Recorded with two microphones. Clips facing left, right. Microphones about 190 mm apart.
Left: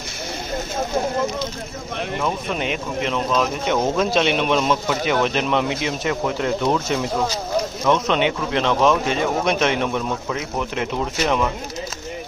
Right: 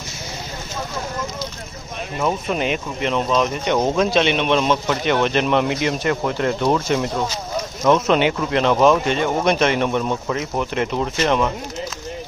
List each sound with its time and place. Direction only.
2.2 s a man's voice: centre (ahead or behind)